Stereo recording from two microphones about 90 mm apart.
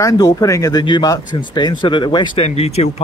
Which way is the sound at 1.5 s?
60° left (ahead or behind).